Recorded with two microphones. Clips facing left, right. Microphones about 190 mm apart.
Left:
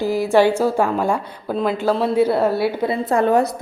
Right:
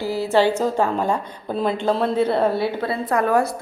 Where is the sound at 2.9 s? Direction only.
25° left (ahead or behind).